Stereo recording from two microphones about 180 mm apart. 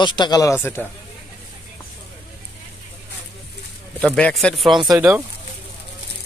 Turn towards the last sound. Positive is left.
turn(degrees=-10)  # may be behind; listen again after turning